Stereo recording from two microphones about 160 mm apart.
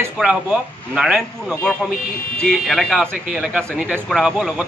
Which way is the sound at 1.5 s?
10° left (ahead or behind).